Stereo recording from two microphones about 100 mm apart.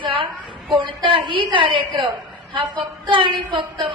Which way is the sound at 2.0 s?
50° right (ahead or behind).